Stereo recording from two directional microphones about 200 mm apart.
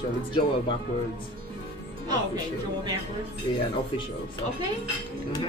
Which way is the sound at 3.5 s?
25° left (ahead or behind).